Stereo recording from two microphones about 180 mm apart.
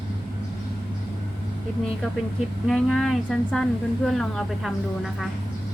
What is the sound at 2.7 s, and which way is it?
A woman's voice, centre (ahead or behind).